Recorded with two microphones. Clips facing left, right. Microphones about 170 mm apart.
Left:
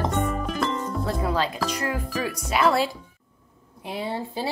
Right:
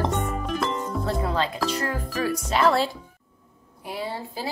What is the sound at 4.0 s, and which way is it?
Speech, 20° left (ahead or behind).